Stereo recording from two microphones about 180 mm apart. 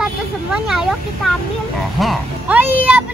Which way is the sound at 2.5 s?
10° right (ahead or behind).